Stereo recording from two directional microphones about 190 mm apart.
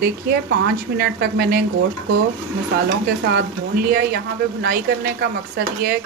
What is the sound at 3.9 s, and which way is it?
Speech, 55° right (ahead or behind).